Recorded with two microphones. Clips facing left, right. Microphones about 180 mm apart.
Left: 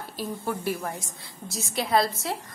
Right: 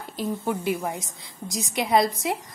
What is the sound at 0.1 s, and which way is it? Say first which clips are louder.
A woman's voice: right 4 dB; 15° right (ahead or behind).